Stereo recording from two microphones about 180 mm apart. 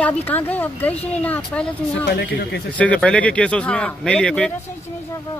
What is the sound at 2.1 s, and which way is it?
Speech, 65° left (ahead or behind).